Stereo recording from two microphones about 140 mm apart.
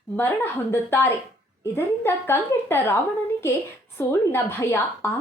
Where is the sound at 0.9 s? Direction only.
15° left (ahead or behind).